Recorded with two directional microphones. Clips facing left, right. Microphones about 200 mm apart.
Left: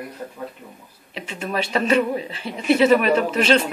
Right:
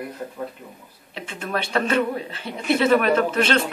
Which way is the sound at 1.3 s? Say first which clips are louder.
Left 1 dB; 10° left (ahead or behind).